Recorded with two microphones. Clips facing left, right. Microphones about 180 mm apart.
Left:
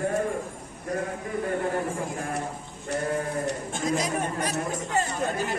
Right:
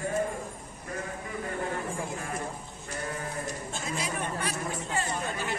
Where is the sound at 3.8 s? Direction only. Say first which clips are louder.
Left 8 dB; 40° left (ahead or behind).